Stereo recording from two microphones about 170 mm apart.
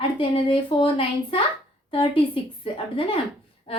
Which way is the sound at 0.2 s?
35° left (ahead or behind).